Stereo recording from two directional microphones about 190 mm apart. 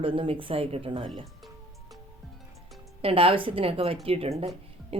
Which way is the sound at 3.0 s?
30° right (ahead or behind).